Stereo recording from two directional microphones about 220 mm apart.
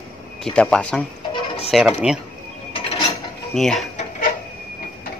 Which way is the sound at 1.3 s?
25° left (ahead or behind).